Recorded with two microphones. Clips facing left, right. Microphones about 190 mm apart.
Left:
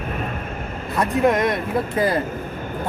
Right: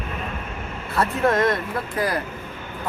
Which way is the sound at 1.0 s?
15° left (ahead or behind).